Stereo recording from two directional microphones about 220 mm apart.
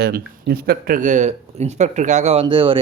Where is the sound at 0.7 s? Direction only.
40° right (ahead or behind).